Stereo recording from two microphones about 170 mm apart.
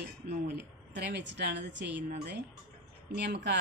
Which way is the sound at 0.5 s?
90° right.